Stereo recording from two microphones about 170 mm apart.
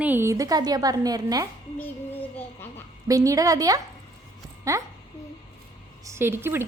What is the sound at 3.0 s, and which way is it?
A woman's voice, 20° right (ahead or behind).